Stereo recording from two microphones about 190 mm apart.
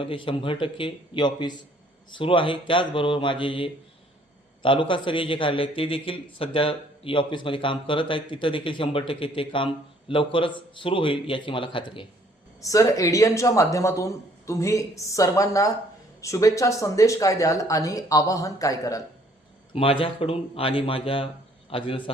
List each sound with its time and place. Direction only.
0.0 s a man's voice: 25° left (ahead or behind)
19.7 s a man's voice: 30° left (ahead or behind)